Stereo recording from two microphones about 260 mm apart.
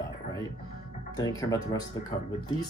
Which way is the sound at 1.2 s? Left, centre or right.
Centre.